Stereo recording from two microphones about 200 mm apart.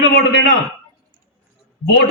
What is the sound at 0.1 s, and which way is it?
Speech, 60° left (ahead or behind).